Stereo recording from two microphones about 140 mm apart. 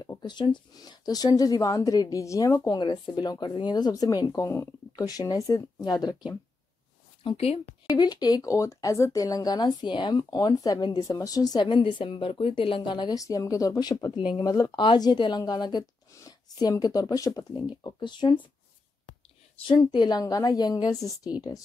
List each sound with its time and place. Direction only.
0.0 s speech: 30° left (ahead or behind)
7.2 s speech: 45° left (ahead or behind)
7.9 s speech: 30° left (ahead or behind)
19.6 s speech: 30° left (ahead or behind)